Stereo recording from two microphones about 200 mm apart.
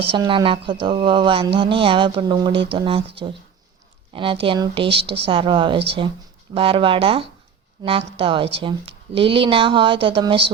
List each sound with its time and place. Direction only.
0.0 s speech: 25° right (ahead or behind)
4.1 s speech: 25° right (ahead or behind)